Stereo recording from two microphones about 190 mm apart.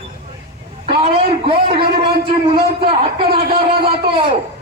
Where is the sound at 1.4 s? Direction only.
30° right (ahead or behind).